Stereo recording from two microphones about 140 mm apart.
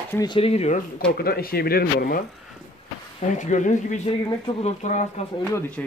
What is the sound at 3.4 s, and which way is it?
Speech, 65° left (ahead or behind).